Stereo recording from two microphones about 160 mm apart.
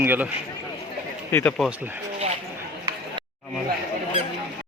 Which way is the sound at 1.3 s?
15° left (ahead or behind).